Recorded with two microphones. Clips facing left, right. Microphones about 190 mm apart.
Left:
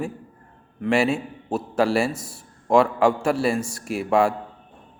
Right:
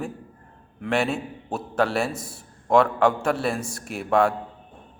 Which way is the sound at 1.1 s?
25° left (ahead or behind).